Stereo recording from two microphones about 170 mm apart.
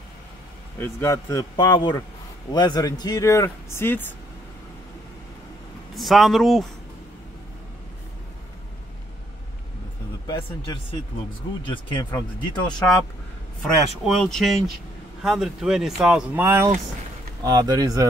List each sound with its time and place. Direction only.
0.7 s speech: 15° left (ahead or behind)
5.9 s speech: centre (ahead or behind)
10.2 s speech: 25° left (ahead or behind)
13.6 s speech: centre (ahead or behind); by 18.0 s 20° right (ahead or behind)